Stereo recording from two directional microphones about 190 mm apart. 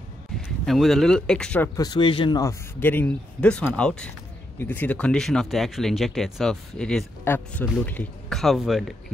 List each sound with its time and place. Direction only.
0.7 s speech: centre (ahead or behind)
1.8 s speech: 25° left (ahead or behind)
2.8 s speech: 10° left (ahead or behind)